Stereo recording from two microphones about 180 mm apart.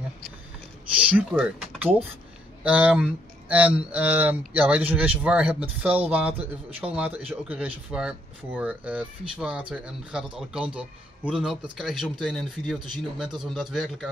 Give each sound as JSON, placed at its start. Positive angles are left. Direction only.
{"t": 1.0, "sound": "a man's voice", "side_deg": -5}